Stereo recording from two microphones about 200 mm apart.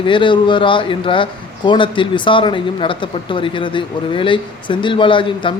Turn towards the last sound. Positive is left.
turn(degrees=25)  # may be behind; listen again after turning